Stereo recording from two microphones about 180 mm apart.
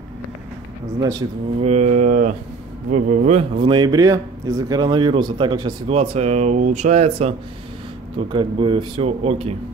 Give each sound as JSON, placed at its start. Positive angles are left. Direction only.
{"t": 1.6, "sound": "a man's voice", "side_deg": -40}